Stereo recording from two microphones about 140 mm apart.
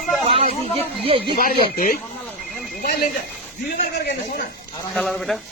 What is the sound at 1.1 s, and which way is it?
Speech, 40° right (ahead or behind).